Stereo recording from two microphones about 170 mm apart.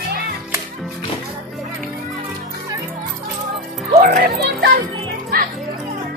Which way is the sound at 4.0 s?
55° right (ahead or behind).